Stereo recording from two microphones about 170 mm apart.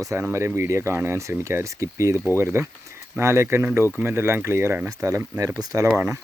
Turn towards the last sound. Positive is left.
turn(degrees=-15)  # may be behind; listen again after turning